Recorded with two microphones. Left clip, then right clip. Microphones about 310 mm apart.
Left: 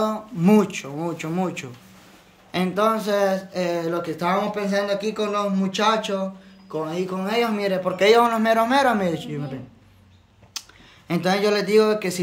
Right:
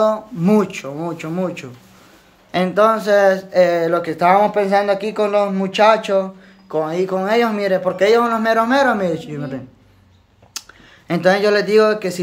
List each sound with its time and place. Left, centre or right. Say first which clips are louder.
0.0 s speech: right 7 dB; centre
10.6 s a sound: right 3 dB; centre
11.1 s speech: right 6 dB; centre